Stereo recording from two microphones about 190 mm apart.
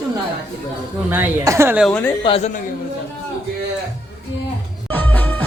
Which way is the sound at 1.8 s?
5° left (ahead or behind).